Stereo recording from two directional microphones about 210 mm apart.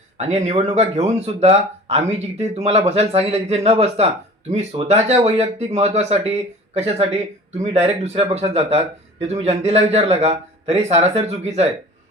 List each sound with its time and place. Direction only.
0.2 s speech: 30° right (ahead or behind)